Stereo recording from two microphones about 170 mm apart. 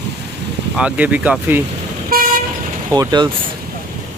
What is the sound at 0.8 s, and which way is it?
Speech, 10° right (ahead or behind).